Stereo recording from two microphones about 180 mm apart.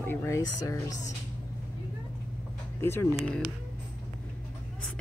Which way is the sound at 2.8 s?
15° left (ahead or behind).